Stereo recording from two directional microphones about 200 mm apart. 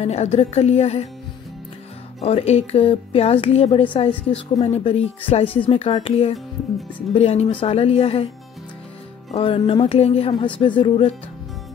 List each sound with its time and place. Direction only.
0.0 s speech: 30° left (ahead or behind)
2.2 s speech: 30° left (ahead or behind)
9.3 s speech: 30° left (ahead or behind)